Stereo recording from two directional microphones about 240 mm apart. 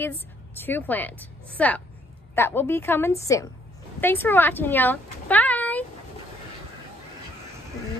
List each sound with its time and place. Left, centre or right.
0.0 s a woman's voice: centre